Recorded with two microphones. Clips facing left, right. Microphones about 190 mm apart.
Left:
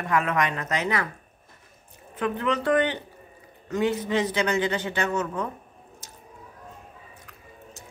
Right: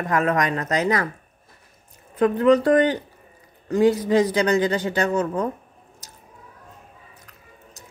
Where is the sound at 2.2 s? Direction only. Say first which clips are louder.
Right 10 dB; 35° right (ahead or behind).